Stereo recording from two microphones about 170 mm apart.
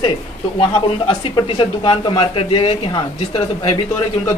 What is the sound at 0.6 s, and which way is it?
Speech, 30° left (ahead or behind).